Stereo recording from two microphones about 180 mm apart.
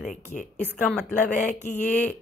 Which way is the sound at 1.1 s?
45° left (ahead or behind).